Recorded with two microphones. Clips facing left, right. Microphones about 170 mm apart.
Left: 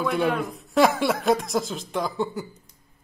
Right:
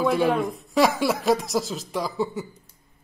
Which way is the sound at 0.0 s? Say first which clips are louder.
Right 3 dB; centre (ahead or behind).